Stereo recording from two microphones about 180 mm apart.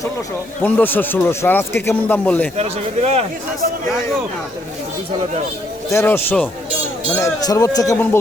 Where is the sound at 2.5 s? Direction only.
35° right (ahead or behind).